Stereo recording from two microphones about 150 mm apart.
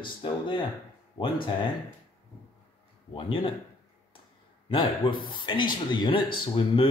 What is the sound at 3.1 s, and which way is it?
Speech, 35° left (ahead or behind).